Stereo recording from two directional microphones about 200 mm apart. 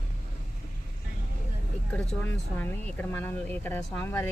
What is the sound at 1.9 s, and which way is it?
Speech, 5° left (ahead or behind).